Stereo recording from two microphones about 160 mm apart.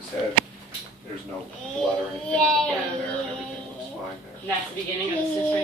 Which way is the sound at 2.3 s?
5° left (ahead or behind).